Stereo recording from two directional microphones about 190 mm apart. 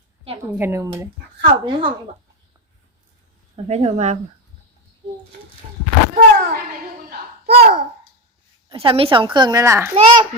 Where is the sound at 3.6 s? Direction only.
35° right (ahead or behind).